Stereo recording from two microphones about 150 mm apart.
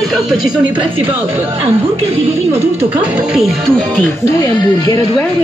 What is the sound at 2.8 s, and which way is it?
Speech, 5° right (ahead or behind).